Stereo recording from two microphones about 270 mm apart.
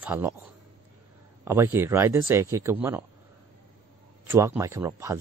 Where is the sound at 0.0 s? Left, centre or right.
Centre.